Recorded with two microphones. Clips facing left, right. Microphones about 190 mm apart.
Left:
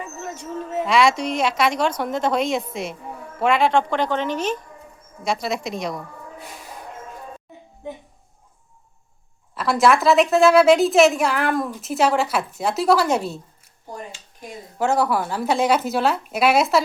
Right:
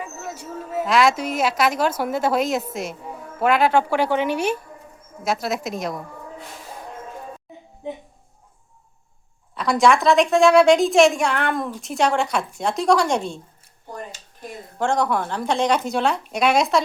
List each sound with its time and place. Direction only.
0.0 s a woman's voice: 10° right (ahead or behind)
9.6 s a woman's voice: centre (ahead or behind)
14.8 s a woman's voice: 5° left (ahead or behind)